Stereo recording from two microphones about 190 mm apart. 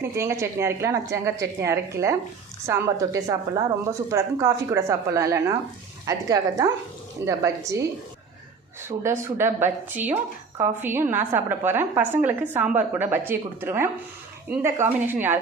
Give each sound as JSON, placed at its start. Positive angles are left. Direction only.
{"t": 0.0, "sound": "a woman's voice", "side_deg": -15}
{"t": 8.9, "sound": "a woman's voice", "side_deg": -15}